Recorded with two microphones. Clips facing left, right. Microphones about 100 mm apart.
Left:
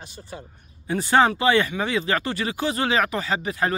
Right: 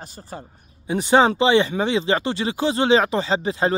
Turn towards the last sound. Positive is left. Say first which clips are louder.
# right 3 dB
turn(degrees=-25)  # may be behind; listen again after turning